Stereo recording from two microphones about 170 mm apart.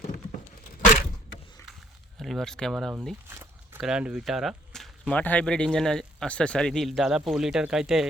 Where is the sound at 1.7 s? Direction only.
Centre (ahead or behind).